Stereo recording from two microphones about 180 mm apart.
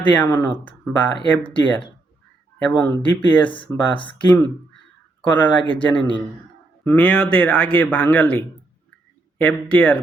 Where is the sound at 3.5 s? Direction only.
25° left (ahead or behind).